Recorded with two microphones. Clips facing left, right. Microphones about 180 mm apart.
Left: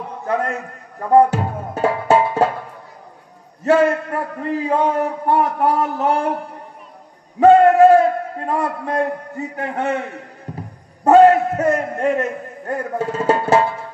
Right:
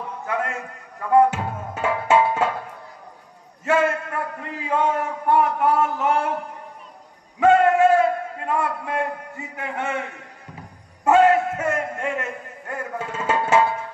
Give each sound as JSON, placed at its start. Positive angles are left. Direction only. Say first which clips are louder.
{"t": 0.3, "sound": "a man's voice", "louder": "left 6 dB", "side_deg": 40}
{"t": 3.6, "sound": "a man's voice", "louder": "left 6 dB", "side_deg": 35}
{"t": 7.3, "sound": "a man's voice", "louder": "left 6 dB", "side_deg": 35}
{"t": 11.1, "sound": "a man's voice", "louder": "left 6 dB", "side_deg": 40}